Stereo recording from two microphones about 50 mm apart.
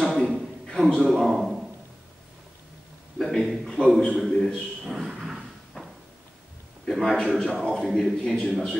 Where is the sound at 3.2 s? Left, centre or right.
Centre.